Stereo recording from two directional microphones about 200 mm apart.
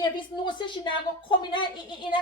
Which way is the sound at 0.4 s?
25° left (ahead or behind).